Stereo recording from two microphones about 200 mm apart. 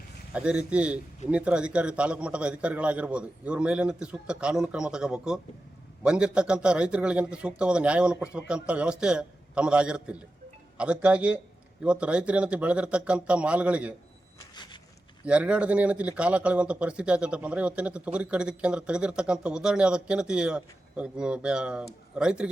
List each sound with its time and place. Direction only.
0.3 s speech: 5° right (ahead or behind)
14.3 s a sound: 20° left (ahead or behind)
15.3 s speech: 5° right (ahead or behind)